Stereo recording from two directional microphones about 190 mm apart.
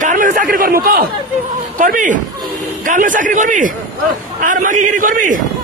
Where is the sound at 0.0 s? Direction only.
45° right (ahead or behind).